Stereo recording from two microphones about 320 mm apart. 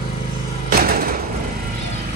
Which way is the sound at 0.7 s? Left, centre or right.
Right.